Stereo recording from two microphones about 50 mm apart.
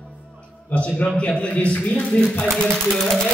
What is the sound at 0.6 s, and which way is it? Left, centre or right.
A man's voice, left.